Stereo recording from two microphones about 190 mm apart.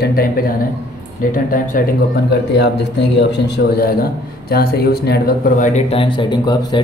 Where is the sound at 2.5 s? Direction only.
65° left (ahead or behind).